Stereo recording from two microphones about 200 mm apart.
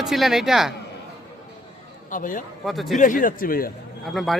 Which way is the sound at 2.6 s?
Centre (ahead or behind).